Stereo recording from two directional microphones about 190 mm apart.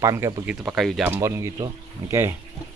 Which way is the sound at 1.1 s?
15° right (ahead or behind).